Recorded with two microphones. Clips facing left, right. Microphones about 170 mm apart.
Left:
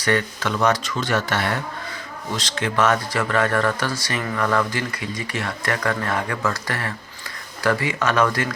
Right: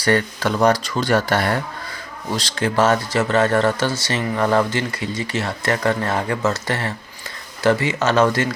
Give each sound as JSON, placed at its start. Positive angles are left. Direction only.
{"t": 0.0, "sound": "speech", "side_deg": -35}